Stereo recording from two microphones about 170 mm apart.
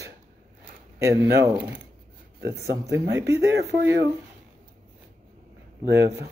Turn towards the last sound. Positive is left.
turn(degrees=-20)  # may be behind; listen again after turning